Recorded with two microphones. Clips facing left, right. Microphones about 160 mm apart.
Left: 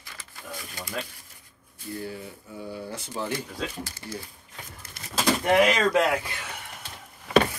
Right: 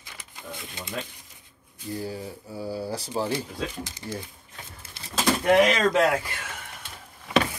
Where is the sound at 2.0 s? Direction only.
35° right (ahead or behind).